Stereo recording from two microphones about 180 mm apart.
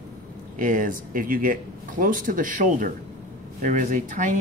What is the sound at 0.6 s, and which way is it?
Speech, 50° right (ahead or behind).